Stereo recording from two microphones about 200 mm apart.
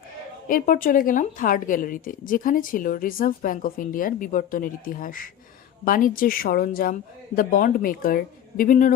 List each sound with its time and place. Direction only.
0.4 s a woman's voice: 45° left (ahead or behind)